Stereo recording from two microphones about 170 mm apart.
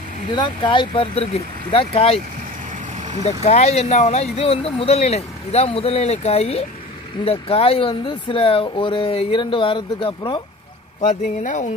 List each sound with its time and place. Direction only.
0.3 s speech: 25° left (ahead or behind)
3.3 s speech: 40° left (ahead or behind)
11.1 s speech: 45° left (ahead or behind)